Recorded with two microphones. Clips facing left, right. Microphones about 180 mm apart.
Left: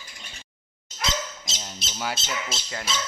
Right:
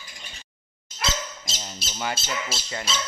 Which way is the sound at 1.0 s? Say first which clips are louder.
Even; 20° left (ahead or behind).